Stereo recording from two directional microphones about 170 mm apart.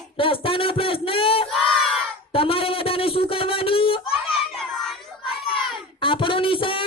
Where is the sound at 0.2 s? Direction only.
30° left (ahead or behind).